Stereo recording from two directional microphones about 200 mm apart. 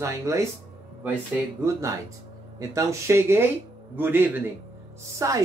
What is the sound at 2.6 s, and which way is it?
Speech, 15° right (ahead or behind).